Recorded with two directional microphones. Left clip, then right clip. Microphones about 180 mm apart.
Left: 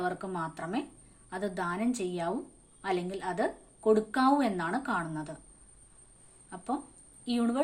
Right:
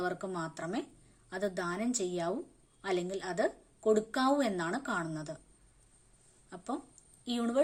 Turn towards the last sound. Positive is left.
turn(degrees=-40)  # may be behind; listen again after turning